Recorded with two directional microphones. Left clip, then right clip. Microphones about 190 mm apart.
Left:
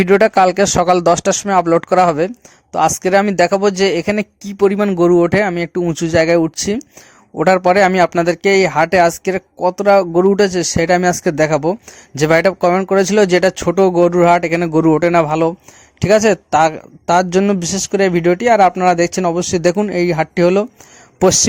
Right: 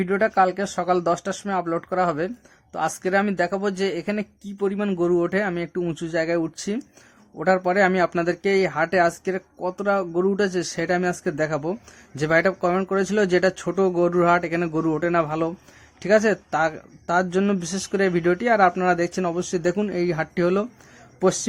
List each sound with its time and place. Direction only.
0.0 s speech: 40° left (ahead or behind)